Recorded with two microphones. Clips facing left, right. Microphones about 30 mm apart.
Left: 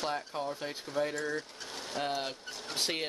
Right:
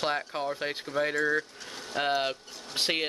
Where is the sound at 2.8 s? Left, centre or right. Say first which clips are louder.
Right 5 dB; right.